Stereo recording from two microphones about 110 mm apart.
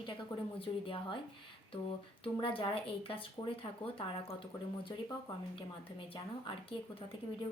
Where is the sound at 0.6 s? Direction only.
55° left (ahead or behind).